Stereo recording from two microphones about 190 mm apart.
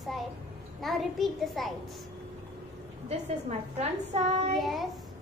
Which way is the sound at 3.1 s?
35° right (ahead or behind).